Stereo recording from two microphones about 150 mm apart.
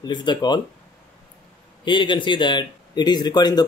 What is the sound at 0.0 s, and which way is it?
Speech, 30° left (ahead or behind).